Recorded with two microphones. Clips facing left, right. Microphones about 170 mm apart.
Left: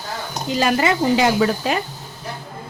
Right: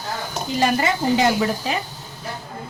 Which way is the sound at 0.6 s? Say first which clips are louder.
Left 2 dB; 90° left.